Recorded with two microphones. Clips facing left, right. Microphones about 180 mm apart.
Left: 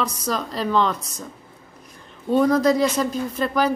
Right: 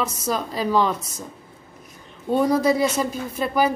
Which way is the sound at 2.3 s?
10° right (ahead or behind).